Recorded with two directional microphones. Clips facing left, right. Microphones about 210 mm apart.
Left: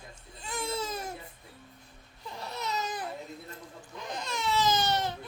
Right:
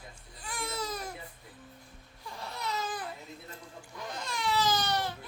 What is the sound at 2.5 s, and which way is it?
Baby cry, 20° left (ahead or behind).